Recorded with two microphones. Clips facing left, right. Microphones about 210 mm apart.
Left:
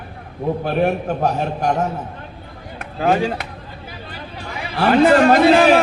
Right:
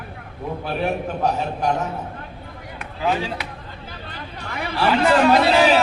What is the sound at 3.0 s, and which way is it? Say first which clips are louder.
Speech: left 5 dB; 50° left (ahead or behind).